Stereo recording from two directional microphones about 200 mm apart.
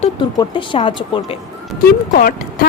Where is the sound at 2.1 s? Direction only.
45° left (ahead or behind).